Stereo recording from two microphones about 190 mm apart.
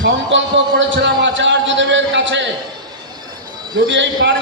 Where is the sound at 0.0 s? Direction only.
75° right (ahead or behind).